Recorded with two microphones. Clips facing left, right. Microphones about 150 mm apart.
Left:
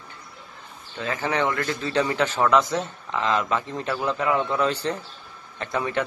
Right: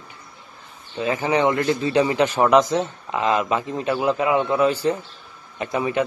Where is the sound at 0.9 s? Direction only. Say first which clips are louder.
Right 5 dB; 15° right (ahead or behind).